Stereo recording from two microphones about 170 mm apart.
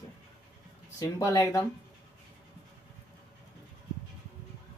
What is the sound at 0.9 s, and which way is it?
Speech, 15° left (ahead or behind).